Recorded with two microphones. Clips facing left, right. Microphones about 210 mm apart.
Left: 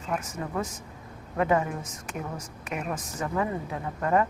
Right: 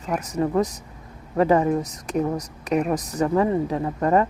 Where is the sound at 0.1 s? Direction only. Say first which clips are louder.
Right 9 dB; 40° right (ahead or behind).